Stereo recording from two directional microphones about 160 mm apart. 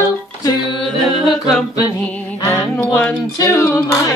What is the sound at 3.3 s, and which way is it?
Music, 20° left (ahead or behind).